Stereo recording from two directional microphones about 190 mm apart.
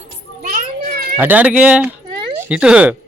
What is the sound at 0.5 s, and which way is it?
Children playing, 45° right (ahead or behind).